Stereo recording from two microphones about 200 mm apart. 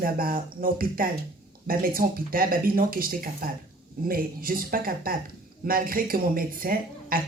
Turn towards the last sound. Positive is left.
turn(degrees=-45)  # may be behind; listen again after turning